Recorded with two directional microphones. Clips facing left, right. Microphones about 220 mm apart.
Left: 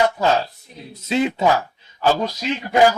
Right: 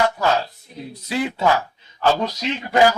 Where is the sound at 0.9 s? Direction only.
25° left (ahead or behind).